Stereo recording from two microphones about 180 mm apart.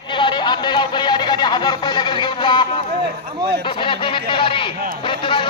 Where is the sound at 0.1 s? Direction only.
25° left (ahead or behind).